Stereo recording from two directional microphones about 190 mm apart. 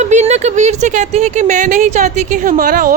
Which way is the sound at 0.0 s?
35° right (ahead or behind).